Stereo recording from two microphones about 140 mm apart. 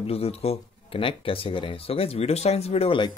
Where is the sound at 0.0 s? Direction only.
45° left (ahead or behind).